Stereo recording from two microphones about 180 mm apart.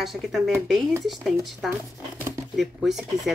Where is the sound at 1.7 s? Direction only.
15° right (ahead or behind).